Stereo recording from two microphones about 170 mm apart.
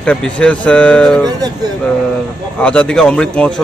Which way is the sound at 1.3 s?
25° right (ahead or behind).